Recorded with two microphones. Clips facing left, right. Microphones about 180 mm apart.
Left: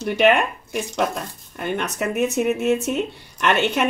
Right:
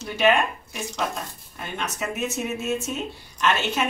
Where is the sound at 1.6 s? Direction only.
60° left (ahead or behind).